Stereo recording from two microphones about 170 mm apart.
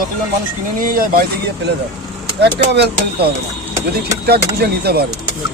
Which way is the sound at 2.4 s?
80° right.